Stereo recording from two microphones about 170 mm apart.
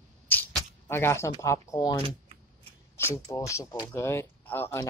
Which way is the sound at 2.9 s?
15° left (ahead or behind).